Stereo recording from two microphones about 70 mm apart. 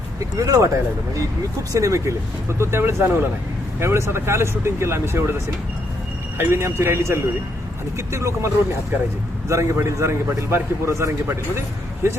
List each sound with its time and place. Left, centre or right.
0.3 s speech: right
1.7 s speech: right
6.3 s a man's voice: right
9.5 s a man's voice: right